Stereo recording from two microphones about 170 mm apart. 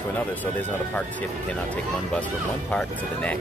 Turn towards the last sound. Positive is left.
turn(degrees=5)  # may be behind; listen again after turning